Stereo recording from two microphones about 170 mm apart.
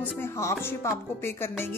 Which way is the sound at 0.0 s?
15° left (ahead or behind).